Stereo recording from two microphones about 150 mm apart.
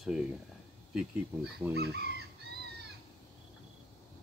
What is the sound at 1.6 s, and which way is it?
Speech, 10° right (ahead or behind).